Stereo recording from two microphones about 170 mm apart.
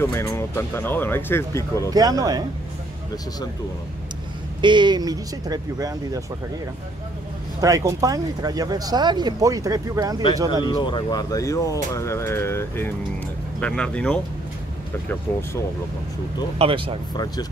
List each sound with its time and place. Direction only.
0.0 s speech: 15° left (ahead or behind)
1.9 s speech: 20° right (ahead or behind)
4.6 s speech: 25° right (ahead or behind)
7.6 s speech: 20° right (ahead or behind)
10.6 s speech: 30° left (ahead or behind); by 14.2 s 5° left (ahead or behind)
16.5 s speech: 30° right (ahead or behind)